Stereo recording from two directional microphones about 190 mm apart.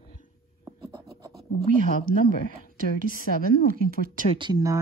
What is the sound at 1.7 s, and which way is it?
Speech, 45° right (ahead or behind).